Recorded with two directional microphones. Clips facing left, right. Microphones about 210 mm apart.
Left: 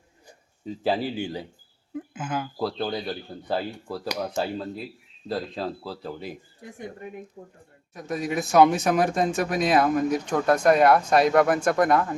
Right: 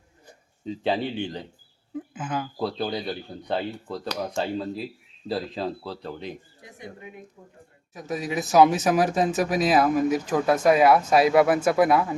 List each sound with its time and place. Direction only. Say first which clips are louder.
0.6 s speech: even; 5° left (ahead or behind)
7.4 s speech: left 6 dB; 30° left (ahead or behind)
7.9 s speech: left 1 dB; centre (ahead or behind)